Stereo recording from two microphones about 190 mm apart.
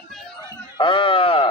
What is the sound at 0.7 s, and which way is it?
Speech, 25° left (ahead or behind).